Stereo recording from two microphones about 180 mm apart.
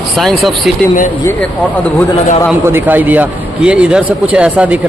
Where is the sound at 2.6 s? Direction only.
10° right (ahead or behind).